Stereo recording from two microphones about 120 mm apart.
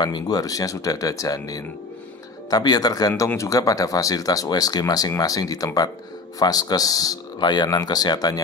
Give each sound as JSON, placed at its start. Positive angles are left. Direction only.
{"t": 0.0, "sound": "speech", "side_deg": 35}